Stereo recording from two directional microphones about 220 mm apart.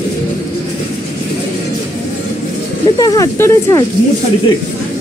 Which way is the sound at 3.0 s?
15° left (ahead or behind).